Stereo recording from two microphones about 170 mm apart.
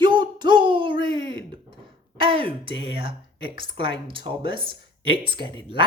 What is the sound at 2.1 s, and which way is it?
Speech, 30° right (ahead or behind).